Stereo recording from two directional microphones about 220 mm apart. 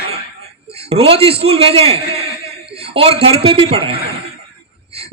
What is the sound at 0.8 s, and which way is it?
A man's voice, 25° right (ahead or behind).